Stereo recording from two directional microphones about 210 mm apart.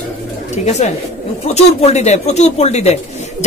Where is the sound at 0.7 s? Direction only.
30° left (ahead or behind).